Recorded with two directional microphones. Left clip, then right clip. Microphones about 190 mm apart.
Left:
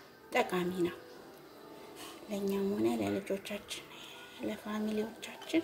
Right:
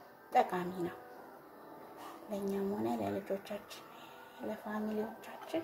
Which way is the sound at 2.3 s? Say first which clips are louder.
Left 3 dB; 20° left (ahead or behind).